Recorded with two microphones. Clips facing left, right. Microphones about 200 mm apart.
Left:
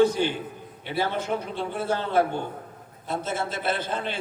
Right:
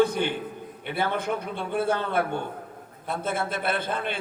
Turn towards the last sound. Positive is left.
turn(degrees=-55)  # may be behind; listen again after turning